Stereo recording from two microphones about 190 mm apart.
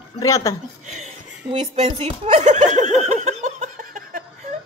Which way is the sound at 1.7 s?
35° right (ahead or behind).